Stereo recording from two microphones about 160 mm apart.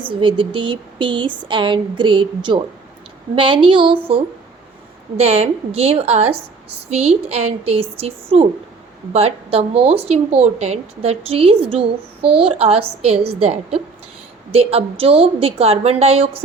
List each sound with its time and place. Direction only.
0.0 s a woman's voice: 30° right (ahead or behind)
5.1 s a woman's voice: 40° right (ahead or behind)
14.5 s a woman's voice: 40° right (ahead or behind)